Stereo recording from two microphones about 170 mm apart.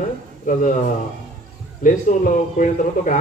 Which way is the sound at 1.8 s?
50° left (ahead or behind).